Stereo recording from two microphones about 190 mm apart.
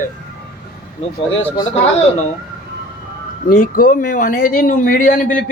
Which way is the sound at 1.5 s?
30° left (ahead or behind).